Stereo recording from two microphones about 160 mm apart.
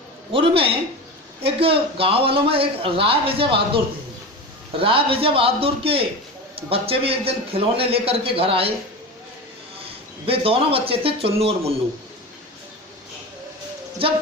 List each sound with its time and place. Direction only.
0.3 s a man's voice: 35° right (ahead or behind)
4.8 s a man's voice: 35° right (ahead or behind)
10.2 s a man's voice: 35° right (ahead or behind)